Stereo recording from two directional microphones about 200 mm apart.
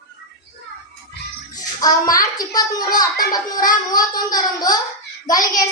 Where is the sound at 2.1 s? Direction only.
20° left (ahead or behind).